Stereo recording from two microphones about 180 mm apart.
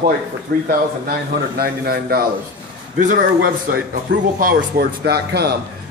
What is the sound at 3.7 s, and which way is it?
A man's voice, 50° right (ahead or behind).